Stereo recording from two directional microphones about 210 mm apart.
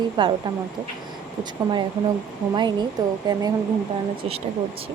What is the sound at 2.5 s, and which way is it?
Speech, 20° right (ahead or behind).